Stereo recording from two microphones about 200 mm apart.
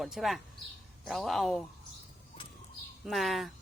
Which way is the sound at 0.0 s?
Centre (ahead or behind).